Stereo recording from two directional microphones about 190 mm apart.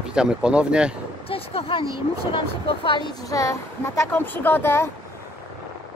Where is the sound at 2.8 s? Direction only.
25° left (ahead or behind).